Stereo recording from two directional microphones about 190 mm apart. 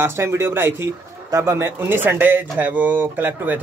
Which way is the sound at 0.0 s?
15° right (ahead or behind).